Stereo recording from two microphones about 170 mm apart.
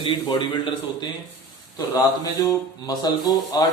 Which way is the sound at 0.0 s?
25° left (ahead or behind).